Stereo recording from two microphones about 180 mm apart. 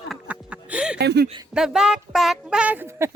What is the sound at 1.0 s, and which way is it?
Speech, 65° right (ahead or behind).